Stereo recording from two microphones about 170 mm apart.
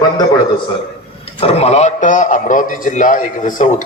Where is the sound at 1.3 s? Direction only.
35° left (ahead or behind).